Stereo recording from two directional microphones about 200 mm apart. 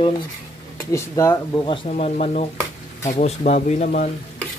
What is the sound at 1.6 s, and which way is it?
Speech, 30° left (ahead or behind).